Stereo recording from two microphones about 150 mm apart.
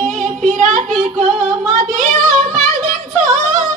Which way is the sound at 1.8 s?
55° right (ahead or behind).